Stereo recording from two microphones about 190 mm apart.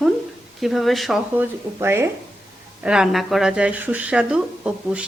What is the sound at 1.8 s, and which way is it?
Speech, 10° right (ahead or behind).